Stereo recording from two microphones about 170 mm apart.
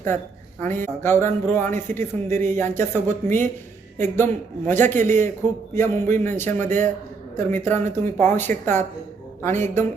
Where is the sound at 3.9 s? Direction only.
15° left (ahead or behind).